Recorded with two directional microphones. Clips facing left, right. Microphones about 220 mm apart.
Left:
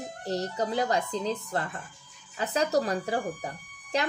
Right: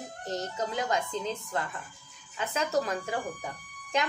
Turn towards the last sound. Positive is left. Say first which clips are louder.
# left 1 dB
turn(degrees=35)  # may be behind; listen again after turning